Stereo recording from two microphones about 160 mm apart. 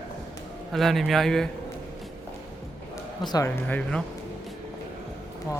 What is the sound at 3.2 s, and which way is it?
Speech, 25° left (ahead or behind).